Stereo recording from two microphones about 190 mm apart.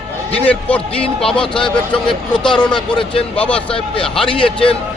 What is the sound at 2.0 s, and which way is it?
Speech, 25° left (ahead or behind).